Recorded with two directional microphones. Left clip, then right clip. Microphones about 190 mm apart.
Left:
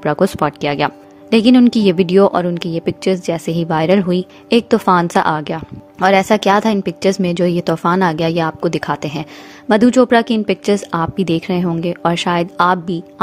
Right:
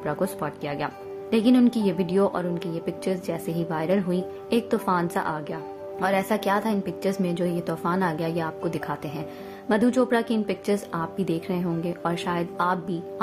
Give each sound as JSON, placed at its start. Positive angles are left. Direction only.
{"t": 0.0, "sound": "speech", "side_deg": 45}